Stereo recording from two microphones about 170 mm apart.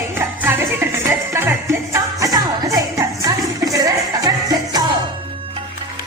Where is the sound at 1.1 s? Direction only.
15° right (ahead or behind).